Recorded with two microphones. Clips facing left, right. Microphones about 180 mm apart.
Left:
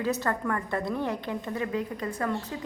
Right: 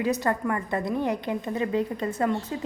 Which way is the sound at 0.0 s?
15° right (ahead or behind).